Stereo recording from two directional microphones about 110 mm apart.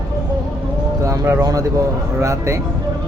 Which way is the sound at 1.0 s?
30° right (ahead or behind).